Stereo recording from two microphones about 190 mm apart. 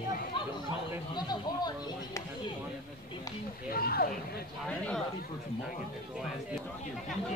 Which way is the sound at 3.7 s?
50° left (ahead or behind).